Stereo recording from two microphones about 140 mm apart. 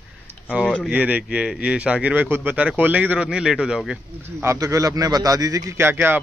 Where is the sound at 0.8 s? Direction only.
10° right (ahead or behind).